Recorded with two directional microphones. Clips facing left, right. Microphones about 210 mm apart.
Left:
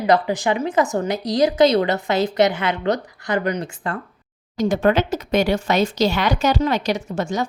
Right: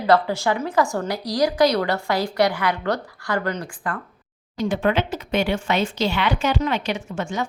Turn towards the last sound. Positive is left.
turn(degrees=40)  # may be behind; listen again after turning